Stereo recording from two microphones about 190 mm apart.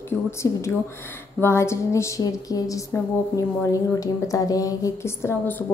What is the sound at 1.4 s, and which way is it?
A woman's voice, 15° left (ahead or behind).